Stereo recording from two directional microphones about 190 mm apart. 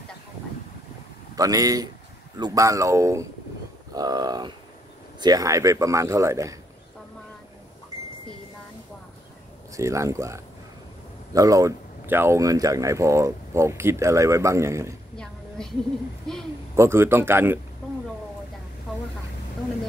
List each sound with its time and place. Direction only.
1.3 s speech: 20° right (ahead or behind)
9.8 s speech: 15° right (ahead or behind)
15.1 s a sound: 5° left (ahead or behind)
16.7 s speech: 15° right (ahead or behind)